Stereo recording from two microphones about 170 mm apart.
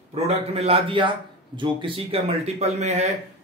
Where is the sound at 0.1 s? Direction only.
35° right (ahead or behind).